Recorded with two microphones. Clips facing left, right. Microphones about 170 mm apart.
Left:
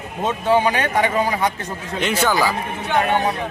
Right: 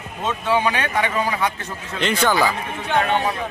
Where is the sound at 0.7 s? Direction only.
45° left (ahead or behind).